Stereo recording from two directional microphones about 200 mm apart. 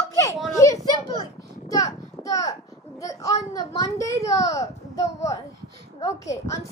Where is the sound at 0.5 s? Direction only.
15° left (ahead or behind).